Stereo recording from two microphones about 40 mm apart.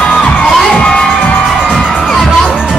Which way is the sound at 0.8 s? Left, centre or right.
Left.